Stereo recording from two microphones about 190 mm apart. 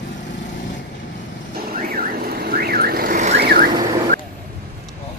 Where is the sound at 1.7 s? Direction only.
50° right (ahead or behind).